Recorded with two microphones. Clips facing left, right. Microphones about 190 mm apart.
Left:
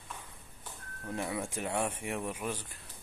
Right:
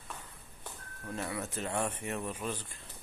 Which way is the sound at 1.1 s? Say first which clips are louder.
Left 2 dB; 15° left (ahead or behind).